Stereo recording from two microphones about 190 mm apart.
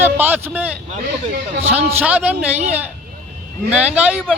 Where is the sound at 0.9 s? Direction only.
40° right (ahead or behind).